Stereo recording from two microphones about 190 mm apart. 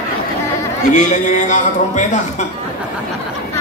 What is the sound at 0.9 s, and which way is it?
A man's voice, 40° left (ahead or behind).